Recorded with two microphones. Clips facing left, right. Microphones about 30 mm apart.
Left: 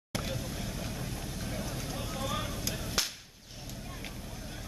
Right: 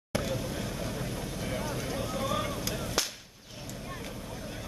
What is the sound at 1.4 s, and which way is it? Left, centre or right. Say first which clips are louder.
Vehicle: right 5 dB; right.